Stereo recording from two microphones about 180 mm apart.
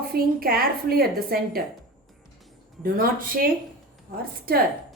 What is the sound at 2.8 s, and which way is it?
Speech, 50° right (ahead or behind).